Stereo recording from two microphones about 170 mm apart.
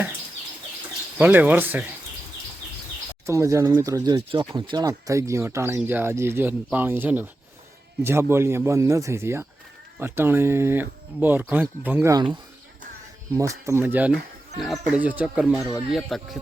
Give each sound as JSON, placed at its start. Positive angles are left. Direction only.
{"t": 1.2, "sound": "speech", "side_deg": -10}
{"t": 3.2, "sound": "speech", "side_deg": -20}
{"t": 12.1, "sound": "speech", "side_deg": -25}